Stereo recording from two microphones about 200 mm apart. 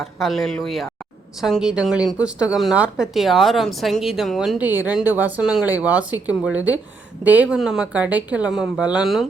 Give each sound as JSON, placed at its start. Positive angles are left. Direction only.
{"t": 0.0, "sound": "speech", "side_deg": 0}